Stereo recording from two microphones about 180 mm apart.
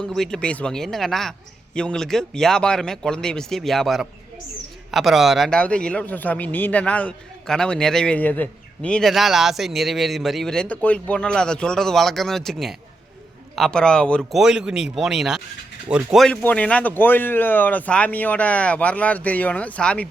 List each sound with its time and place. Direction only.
0.0 s a man's voice: 5° left (ahead or behind)